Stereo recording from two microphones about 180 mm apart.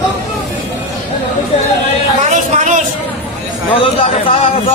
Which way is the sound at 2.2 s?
40° right (ahead or behind).